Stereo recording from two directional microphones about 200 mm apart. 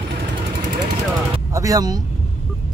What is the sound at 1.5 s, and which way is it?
Speech, 15° right (ahead or behind).